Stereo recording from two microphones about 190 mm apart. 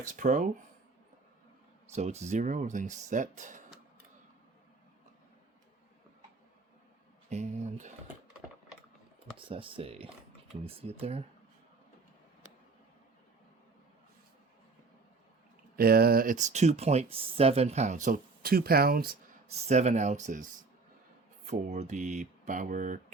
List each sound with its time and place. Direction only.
0.0 s speech: 40° right (ahead or behind)
1.9 s speech: 35° right (ahead or behind)
7.3 s speech: 40° right (ahead or behind)
9.5 s speech: 25° right (ahead or behind)
15.7 s speech: 55° right (ahead or behind)
19.5 s speech: 35° right (ahead or behind)